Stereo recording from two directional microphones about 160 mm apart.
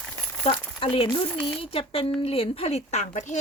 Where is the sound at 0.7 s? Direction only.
35° left (ahead or behind).